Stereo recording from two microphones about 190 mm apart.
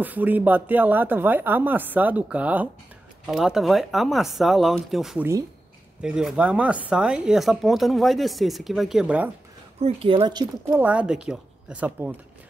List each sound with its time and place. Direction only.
0.0 s speech: 10° right (ahead or behind)
9.8 s speech: 30° right (ahead or behind)
10.7 s speech: 5° right (ahead or behind)